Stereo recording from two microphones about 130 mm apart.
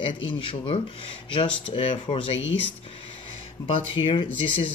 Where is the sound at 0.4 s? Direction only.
40° left (ahead or behind).